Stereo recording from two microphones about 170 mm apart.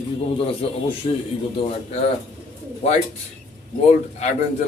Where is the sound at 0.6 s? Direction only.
35° left (ahead or behind).